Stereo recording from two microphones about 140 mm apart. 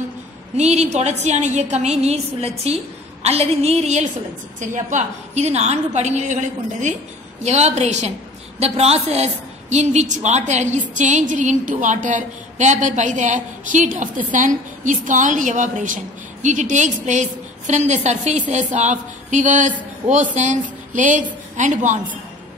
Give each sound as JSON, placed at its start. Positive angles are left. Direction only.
{"t": 0.6, "sound": "a woman's voice", "side_deg": -55}